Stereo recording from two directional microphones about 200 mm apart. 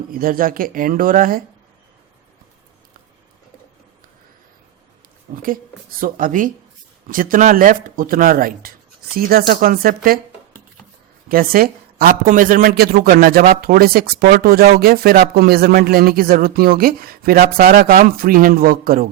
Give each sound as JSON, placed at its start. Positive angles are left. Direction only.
{"t": 0.2, "sound": "speech", "side_deg": -45}
{"t": 5.3, "sound": "speech", "side_deg": -45}
{"t": 11.3, "sound": "speech", "side_deg": -45}